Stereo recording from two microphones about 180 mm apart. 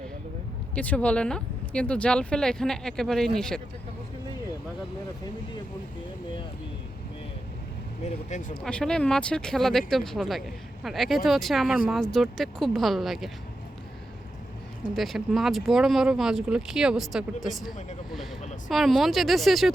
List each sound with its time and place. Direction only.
0.8 s speech: 5° left (ahead or behind)
8.3 s speech: 45° left (ahead or behind)
8.6 s speech: 5° left (ahead or behind)
14.9 s speech: centre (ahead or behind)
18.7 s speech: centre (ahead or behind)